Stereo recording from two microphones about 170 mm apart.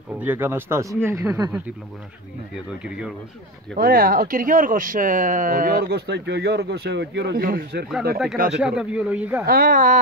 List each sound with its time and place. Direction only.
0.2 s speech: 10° right (ahead or behind)
3.7 s speech: 55° right (ahead or behind); by 7.4 s 90° right
7.4 s speech: 55° right (ahead or behind)
8.5 s speech: 5° right (ahead or behind)
9.5 s speech: 55° right (ahead or behind)